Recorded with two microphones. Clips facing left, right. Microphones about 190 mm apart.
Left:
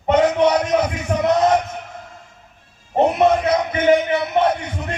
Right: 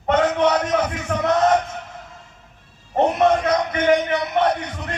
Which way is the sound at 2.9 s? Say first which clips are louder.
Left 2 dB; 10° left (ahead or behind).